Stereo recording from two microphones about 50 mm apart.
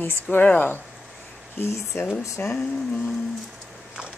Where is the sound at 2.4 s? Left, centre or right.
Left.